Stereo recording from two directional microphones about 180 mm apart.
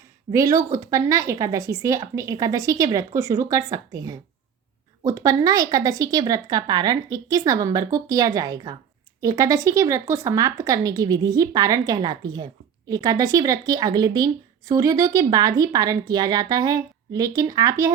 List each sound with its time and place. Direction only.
0.3 s a woman's voice: 20° right (ahead or behind)